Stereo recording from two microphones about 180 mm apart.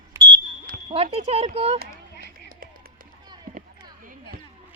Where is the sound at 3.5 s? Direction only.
50° right (ahead or behind).